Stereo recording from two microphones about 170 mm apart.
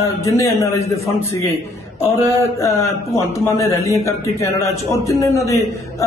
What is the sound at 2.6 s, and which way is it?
A man's voice, 15° left (ahead or behind).